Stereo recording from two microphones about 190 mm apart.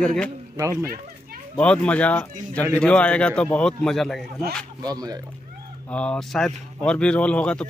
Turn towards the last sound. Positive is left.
turn(degrees=5)  # may be behind; listen again after turning